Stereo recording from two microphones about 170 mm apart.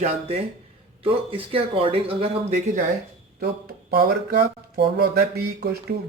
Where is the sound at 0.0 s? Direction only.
40° right (ahead or behind).